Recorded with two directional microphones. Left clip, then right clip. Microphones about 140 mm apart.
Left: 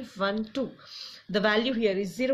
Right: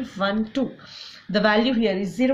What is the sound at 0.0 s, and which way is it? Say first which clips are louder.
Speech: right 5 dB; 45° left (ahead or behind).